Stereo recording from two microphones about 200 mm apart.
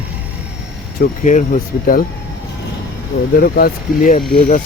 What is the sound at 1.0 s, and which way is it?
Speech, 40° left (ahead or behind).